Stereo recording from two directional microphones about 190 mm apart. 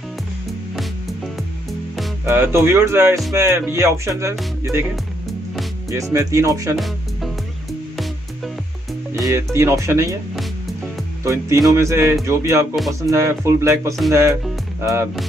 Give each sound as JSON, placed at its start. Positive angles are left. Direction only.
{"t": 2.2, "sound": "speech", "side_deg": -10}
{"t": 5.9, "sound": "speech", "side_deg": -15}
{"t": 9.1, "sound": "speech", "side_deg": -15}
{"t": 11.2, "sound": "speech", "side_deg": -15}
{"t": 12.7, "sound": "music", "side_deg": 0}
{"t": 13.1, "sound": "speech", "side_deg": -15}